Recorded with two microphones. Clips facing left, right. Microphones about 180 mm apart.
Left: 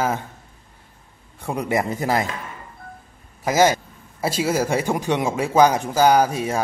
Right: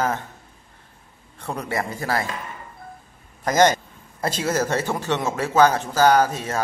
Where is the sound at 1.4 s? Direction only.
15° left (ahead or behind).